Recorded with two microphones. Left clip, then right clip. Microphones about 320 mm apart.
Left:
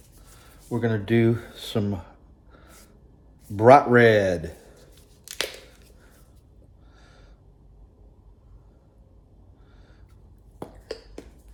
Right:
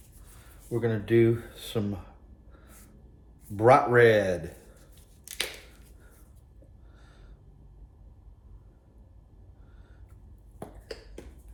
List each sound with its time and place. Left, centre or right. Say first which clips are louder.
0.7 s speech: left 2 dB; left
3.5 s speech: left 5 dB; left
7.0 s a sound: left 5 dB; left